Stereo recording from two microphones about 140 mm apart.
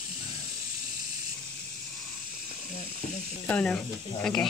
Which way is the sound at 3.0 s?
45° left (ahead or behind).